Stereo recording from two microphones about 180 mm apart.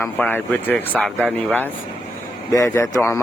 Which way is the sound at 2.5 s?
15° left (ahead or behind).